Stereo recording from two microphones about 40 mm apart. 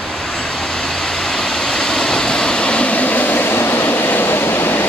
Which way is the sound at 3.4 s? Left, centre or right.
Left.